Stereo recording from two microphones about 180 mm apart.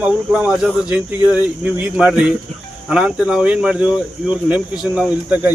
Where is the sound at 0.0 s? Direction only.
5° right (ahead or behind).